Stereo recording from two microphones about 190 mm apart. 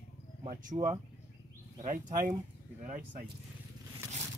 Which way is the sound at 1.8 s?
40° right (ahead or behind).